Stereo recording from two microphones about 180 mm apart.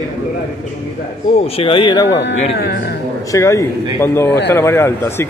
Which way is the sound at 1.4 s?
30° left (ahead or behind).